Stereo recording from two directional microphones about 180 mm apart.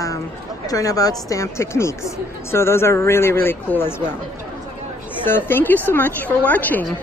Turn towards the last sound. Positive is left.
turn(degrees=10)  # may be behind; listen again after turning